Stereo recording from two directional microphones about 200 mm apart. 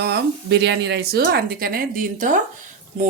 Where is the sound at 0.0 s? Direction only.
55° right (ahead or behind).